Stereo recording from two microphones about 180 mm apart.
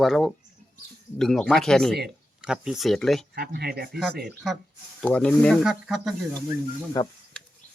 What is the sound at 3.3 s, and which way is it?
Speech, 60° right (ahead or behind).